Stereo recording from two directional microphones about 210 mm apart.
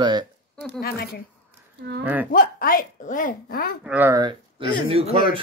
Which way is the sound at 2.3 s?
40° left (ahead or behind).